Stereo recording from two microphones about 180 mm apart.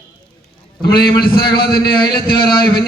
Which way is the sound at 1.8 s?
25° left (ahead or behind).